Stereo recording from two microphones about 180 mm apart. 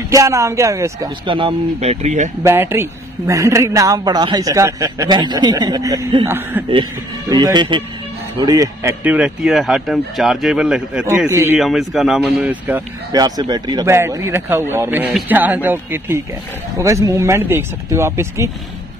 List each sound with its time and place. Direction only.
0.1 s speech: 15° right (ahead or behind)
1.2 s speech: 30° right (ahead or behind)
2.4 s speech: 15° right (ahead or behind)
6.7 s speech: 25° right (ahead or behind)
9.0 s speech: 5° right (ahead or behind)
11.2 s speech: 15° right (ahead or behind)
11.5 s speech: centre (ahead or behind)
13.2 s speech: 20° right (ahead or behind)